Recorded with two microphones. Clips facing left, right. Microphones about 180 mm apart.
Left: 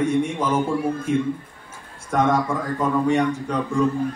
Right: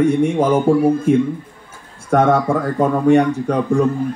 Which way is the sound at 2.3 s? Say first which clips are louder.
Right 6 dB; 60° right (ahead or behind).